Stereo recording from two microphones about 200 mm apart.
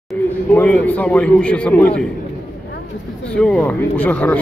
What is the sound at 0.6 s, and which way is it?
A man's voice, 10° left (ahead or behind).